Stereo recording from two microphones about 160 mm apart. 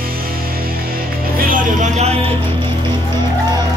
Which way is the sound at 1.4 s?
45° right (ahead or behind).